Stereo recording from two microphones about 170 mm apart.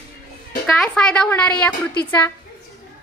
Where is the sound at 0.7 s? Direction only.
5° left (ahead or behind).